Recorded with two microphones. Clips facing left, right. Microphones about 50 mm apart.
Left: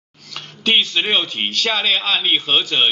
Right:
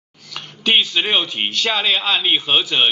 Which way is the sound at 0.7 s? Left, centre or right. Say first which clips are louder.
Even; centre.